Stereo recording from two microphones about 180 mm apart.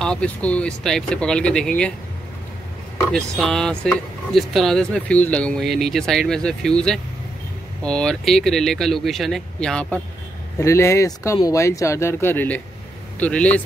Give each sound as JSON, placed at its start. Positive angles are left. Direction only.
{"t": 0.0, "sound": "speech", "side_deg": 5}
{"t": 3.1, "sound": "speech", "side_deg": 5}
{"t": 10.6, "sound": "speech", "side_deg": 15}